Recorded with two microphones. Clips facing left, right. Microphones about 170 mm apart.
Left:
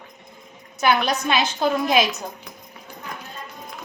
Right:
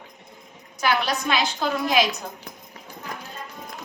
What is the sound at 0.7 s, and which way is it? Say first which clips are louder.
A woman's voice: left 3 dB; 20° left (ahead or behind).